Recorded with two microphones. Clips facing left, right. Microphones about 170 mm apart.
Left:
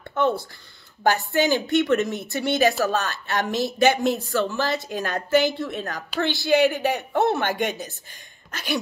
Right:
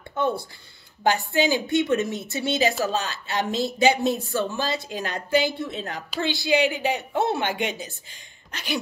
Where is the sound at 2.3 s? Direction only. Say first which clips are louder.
Left 3 dB; 55° left (ahead or behind).